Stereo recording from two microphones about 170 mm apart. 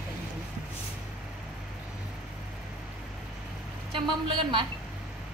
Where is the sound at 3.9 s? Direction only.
30° right (ahead or behind).